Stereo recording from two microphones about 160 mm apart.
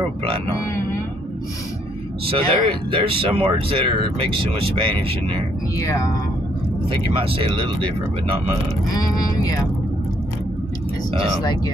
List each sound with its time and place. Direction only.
2.2 s speech: 35° right (ahead or behind)
5.8 s speech: 20° left (ahead or behind)
6.9 s speech: 35° right (ahead or behind)
8.9 s speech: 20° left (ahead or behind)